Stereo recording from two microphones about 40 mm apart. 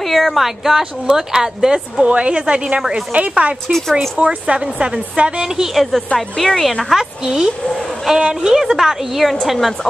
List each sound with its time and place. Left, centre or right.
0.0 s a woman's voice: centre
2.0 s a woman's voice: right
3.6 s speech: centre
4.2 s a woman's voice: right
5.4 s a woman's voice: centre
5.8 s speech: centre
6.9 s a woman's voice: centre
8.2 s a woman's voice: right
8.5 s a woman's voice: centre